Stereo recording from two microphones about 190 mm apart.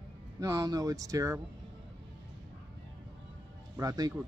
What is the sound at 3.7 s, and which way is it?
Speech, 20° right (ahead or behind).